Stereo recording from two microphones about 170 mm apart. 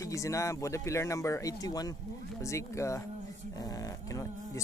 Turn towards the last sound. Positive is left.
turn(degrees=20)  # may be behind; listen again after turning